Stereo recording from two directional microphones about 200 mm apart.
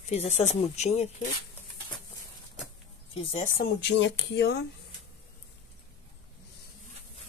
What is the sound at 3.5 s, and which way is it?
Speech, 55° left (ahead or behind).